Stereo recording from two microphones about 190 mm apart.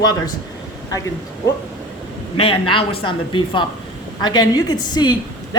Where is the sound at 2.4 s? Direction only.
30° left (ahead or behind).